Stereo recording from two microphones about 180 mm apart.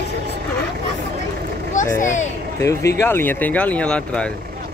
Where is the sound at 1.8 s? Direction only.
45° left (ahead or behind).